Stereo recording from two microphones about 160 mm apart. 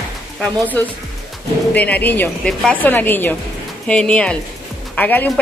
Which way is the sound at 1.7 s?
10° left (ahead or behind).